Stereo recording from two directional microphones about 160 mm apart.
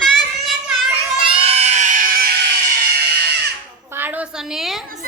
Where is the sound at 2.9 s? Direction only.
90° right.